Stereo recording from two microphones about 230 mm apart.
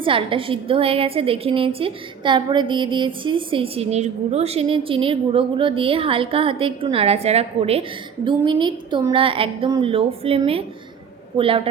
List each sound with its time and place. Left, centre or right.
0.0 s a woman's voice: right